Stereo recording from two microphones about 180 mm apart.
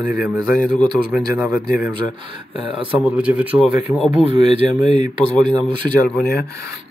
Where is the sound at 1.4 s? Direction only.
10° right (ahead or behind).